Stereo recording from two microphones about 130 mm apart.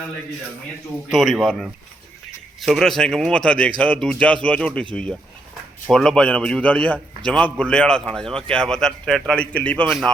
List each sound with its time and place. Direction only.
1.1 s speech: centre (ahead or behind)
5.9 s speech: 5° left (ahead or behind)